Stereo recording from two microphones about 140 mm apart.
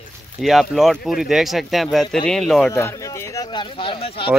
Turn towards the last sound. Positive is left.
turn(degrees=40)  # may be behind; listen again after turning